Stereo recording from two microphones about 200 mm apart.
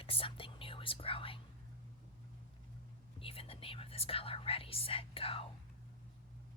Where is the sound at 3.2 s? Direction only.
30° left (ahead or behind).